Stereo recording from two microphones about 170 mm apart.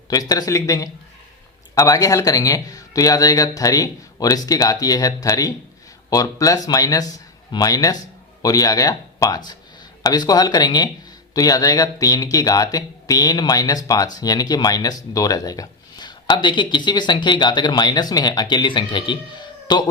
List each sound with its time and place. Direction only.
0.1 s speech: 20° left (ahead or behind)